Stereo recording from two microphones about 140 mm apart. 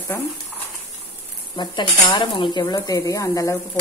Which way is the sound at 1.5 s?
35° left (ahead or behind).